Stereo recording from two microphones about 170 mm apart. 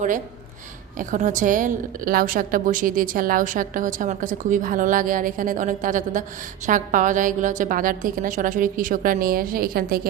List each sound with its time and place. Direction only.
0.9 s a woman's voice: 50° right (ahead or behind)